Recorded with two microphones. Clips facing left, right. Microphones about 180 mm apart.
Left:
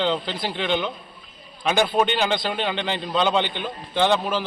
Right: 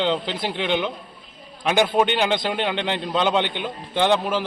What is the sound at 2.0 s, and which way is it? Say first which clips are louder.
A man's voice: right 1 dB; 15° right (ahead or behind).